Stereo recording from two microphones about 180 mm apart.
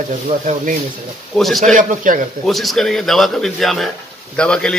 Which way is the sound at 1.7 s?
45° right (ahead or behind).